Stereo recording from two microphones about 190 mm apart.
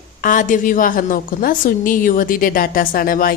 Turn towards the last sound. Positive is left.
turn(degrees=50)  # may be behind; listen again after turning